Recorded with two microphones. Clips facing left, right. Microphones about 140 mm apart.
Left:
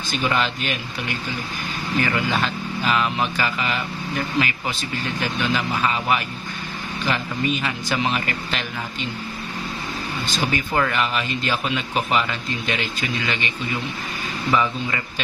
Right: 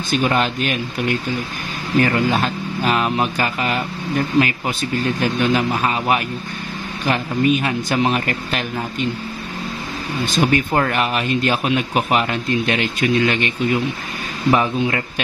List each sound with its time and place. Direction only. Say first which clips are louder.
0.2 s speech: right 2 dB; 45° right (ahead or behind)
10.2 s speech: right 8 dB; 55° right (ahead or behind)